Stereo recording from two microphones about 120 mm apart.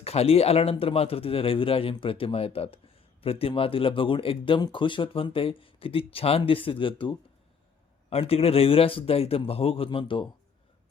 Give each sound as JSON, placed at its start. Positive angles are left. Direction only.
{"t": 0.0, "sound": "a man's voice", "side_deg": 55}